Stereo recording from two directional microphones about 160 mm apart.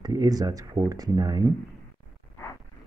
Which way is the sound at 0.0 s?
25° right (ahead or behind).